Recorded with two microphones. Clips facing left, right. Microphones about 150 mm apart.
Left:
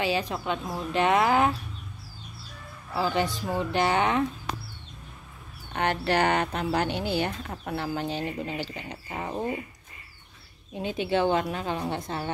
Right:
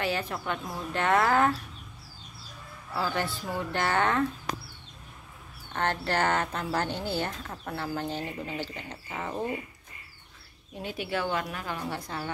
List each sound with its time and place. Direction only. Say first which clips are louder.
0.0 s speech: left 3 dB; 15° left (ahead or behind)
2.9 s speech: left 4 dB; 20° left (ahead or behind)
5.7 s speech: left 3 dB; 15° left (ahead or behind)
10.7 s a woman's voice: left 6 dB; 20° left (ahead or behind)